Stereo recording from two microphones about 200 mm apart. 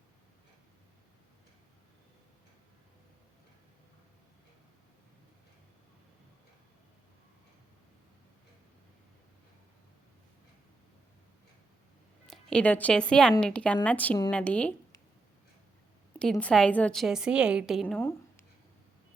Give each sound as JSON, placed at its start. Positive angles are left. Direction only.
{"t": 12.2, "sound": "a woman's voice", "side_deg": 0}
{"t": 16.1, "sound": "a woman's voice", "side_deg": 5}